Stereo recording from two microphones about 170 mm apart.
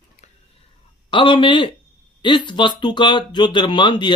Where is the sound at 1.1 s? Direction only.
30° left (ahead or behind).